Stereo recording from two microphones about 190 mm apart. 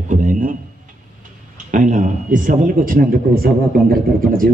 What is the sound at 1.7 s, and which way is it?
Speech, 45° right (ahead or behind).